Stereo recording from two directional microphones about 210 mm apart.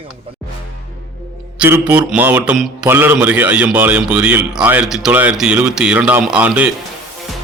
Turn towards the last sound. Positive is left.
turn(degrees=-5)  # may be behind; listen again after turning